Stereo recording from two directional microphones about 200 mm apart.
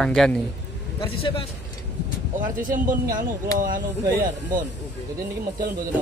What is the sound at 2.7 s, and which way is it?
Speech, 45° right (ahead or behind).